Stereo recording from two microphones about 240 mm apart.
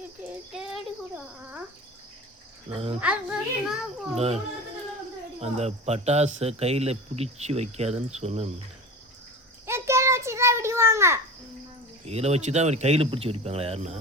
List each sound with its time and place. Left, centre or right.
1.4 s speech: centre
2.6 s speech: right
3.0 s a child's voice: centre
4.1 s speech: right
5.4 s speech: right
9.6 s a sound: centre
12.0 s speech: right